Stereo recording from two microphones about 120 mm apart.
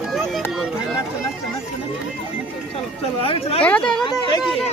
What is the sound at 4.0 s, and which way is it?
Chatter, 40° left (ahead or behind).